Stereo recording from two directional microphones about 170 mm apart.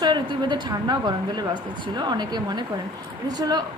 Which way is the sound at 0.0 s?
25° right (ahead or behind).